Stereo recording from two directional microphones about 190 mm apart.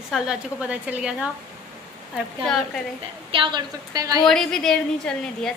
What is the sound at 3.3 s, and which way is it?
Speech, 25° right (ahead or behind).